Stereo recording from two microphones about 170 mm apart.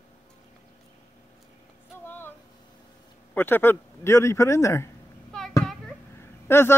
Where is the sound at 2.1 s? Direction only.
10° left (ahead or behind).